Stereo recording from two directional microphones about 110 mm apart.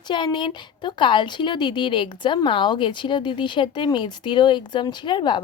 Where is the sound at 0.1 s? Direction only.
45° left (ahead or behind).